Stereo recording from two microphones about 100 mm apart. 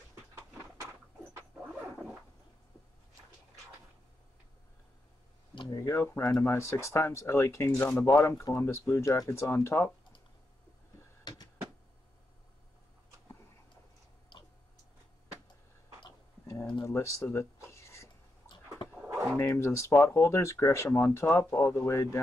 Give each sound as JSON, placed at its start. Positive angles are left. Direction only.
{"t": 5.7, "sound": "speech", "side_deg": 30}
{"t": 16.8, "sound": "a sound", "side_deg": 30}
{"t": 19.3, "sound": "speech", "side_deg": 25}